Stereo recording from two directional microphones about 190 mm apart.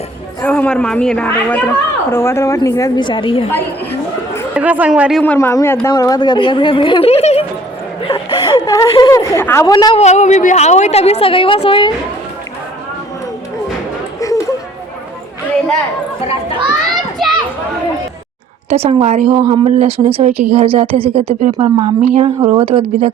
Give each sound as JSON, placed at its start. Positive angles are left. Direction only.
{"t": 0.4, "sound": "a woman's voice", "side_deg": 5}
{"t": 4.5, "sound": "speech", "side_deg": -10}
{"t": 5.2, "sound": "a woman's voice", "side_deg": 10}
{"t": 8.0, "sound": "chuckle", "side_deg": 25}
{"t": 9.3, "sound": "a woman's voice", "side_deg": 15}
{"t": 10.0, "sound": "a woman's voice", "side_deg": 35}
{"t": 14.2, "sound": "a sound", "side_deg": 15}
{"t": 16.9, "sound": "children playing", "side_deg": 0}
{"t": 18.7, "sound": "a woman's voice", "side_deg": -30}